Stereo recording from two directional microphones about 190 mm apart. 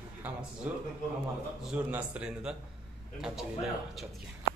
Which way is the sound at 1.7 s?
5° right (ahead or behind).